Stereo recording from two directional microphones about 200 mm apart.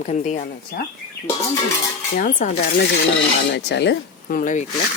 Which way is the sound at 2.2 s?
40° left (ahead or behind).